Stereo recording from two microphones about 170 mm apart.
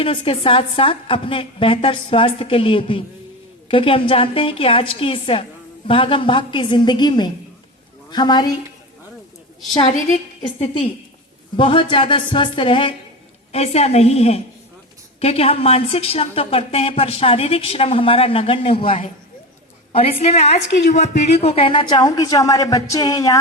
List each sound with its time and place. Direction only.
0.0 s a woman's voice: 30° left (ahead or behind)
9.8 s a woman's voice: 35° left (ahead or behind); by 23.4 s 20° left (ahead or behind)